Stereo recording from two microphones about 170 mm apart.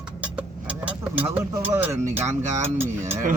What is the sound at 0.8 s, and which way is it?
Speech, 10° right (ahead or behind).